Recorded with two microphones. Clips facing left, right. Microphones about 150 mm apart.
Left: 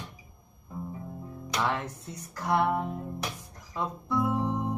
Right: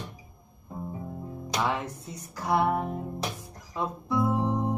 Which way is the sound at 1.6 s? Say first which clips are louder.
Right 1 dB; 15° right (ahead or behind).